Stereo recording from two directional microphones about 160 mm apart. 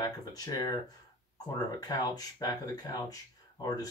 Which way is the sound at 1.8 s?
25° left (ahead or behind).